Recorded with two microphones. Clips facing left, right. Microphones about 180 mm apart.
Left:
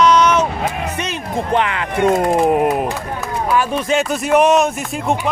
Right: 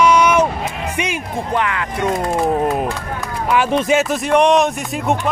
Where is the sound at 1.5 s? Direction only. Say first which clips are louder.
Left 2 dB; 20° left (ahead or behind).